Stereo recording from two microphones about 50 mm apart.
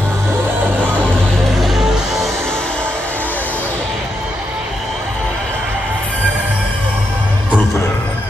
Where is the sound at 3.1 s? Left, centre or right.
Left.